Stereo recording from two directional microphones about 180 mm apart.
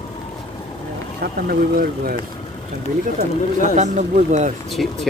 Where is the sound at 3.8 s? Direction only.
40° right (ahead or behind).